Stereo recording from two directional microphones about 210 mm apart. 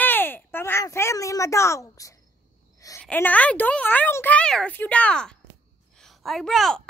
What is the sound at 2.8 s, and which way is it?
A woman's voice, 10° left (ahead or behind).